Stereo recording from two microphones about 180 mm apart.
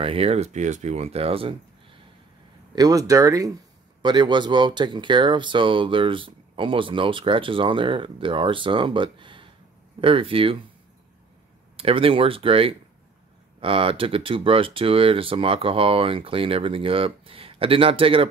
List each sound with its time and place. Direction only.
0.0 s speech: 30° right (ahead or behind)
2.7 s speech: 20° right (ahead or behind)
11.7 s speech: 30° right (ahead or behind)